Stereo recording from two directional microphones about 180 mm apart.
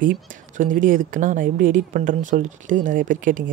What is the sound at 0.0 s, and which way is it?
Speech, 50° right (ahead or behind).